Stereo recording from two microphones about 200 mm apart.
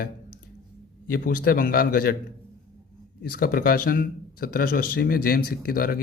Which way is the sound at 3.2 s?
50° left (ahead or behind).